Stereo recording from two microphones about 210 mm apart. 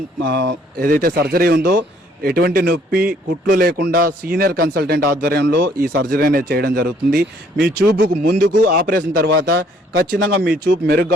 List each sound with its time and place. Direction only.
0.3 s a man's voice: 45° right (ahead or behind)